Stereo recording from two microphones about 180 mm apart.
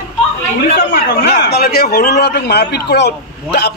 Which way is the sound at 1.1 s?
65° left (ahead or behind).